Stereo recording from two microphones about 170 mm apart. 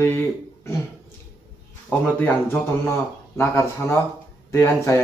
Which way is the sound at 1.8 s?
10° left (ahead or behind).